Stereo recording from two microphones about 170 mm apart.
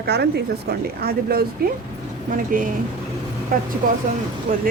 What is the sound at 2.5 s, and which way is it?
Speech, 50° right (ahead or behind).